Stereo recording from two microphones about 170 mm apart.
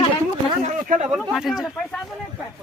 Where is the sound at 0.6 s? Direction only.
40° right (ahead or behind).